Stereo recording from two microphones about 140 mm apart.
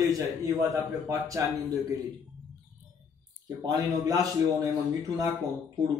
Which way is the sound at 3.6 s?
25° right (ahead or behind).